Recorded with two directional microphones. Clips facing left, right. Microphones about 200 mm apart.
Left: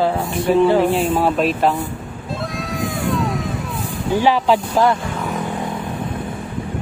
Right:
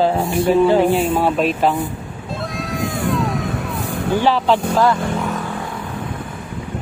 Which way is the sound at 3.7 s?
60° right (ahead or behind).